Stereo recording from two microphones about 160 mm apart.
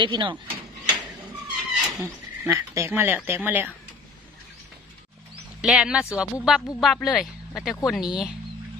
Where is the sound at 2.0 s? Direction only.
15° right (ahead or behind).